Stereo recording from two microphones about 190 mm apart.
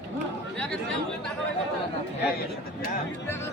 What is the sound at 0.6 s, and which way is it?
Chatter, 5° left (ahead or behind).